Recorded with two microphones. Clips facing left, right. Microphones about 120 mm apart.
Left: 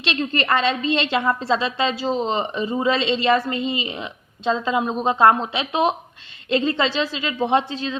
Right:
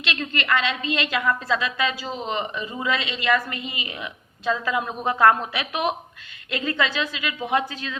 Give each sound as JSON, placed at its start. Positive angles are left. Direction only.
{"t": 0.0, "sound": "a woman's voice", "side_deg": 30}